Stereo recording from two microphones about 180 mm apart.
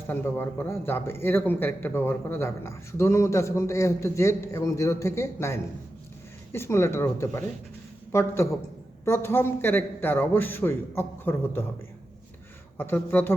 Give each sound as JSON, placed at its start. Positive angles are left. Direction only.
{"t": 0.1, "sound": "speech", "side_deg": 10}
{"t": 12.7, "sound": "speech", "side_deg": 10}